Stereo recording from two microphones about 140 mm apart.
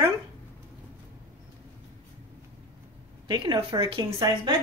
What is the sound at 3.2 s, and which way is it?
A woman's voice, 30° right (ahead or behind).